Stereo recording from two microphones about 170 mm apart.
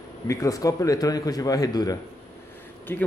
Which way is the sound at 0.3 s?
20° left (ahead or behind).